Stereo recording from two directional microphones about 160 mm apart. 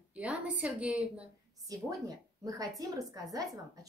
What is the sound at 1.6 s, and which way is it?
A woman's voice, 20° right (ahead or behind).